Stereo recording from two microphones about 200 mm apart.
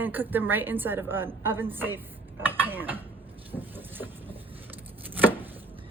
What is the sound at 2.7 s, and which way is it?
Mechanisms, 10° right (ahead or behind).